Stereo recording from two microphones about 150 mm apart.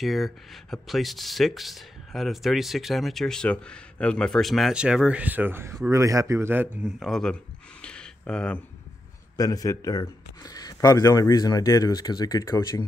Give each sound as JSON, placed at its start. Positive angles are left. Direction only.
{"t": 0.0, "sound": "speech", "side_deg": 0}
{"t": 7.0, "sound": "speech", "side_deg": 0}
{"t": 7.8, "sound": "a sound", "side_deg": 5}
{"t": 9.4, "sound": "speech", "side_deg": 25}